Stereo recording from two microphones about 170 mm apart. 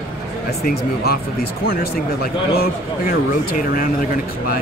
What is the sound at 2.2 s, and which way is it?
Speech, 60° left (ahead or behind).